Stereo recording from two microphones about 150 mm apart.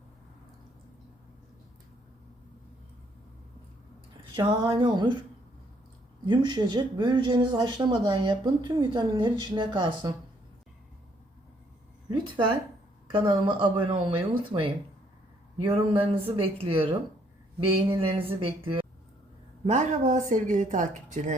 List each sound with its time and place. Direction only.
4.4 s speech: 30° right (ahead or behind)
6.2 s speech: 30° right (ahead or behind)
12.1 s a sound: 35° right (ahead or behind)
13.1 s speech: 35° right (ahead or behind)
18.0 s speech: 40° right (ahead or behind)
19.6 s a woman's voice: 50° right (ahead or behind)